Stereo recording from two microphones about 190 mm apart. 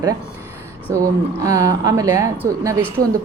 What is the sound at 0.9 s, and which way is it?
Speech, 15° right (ahead or behind).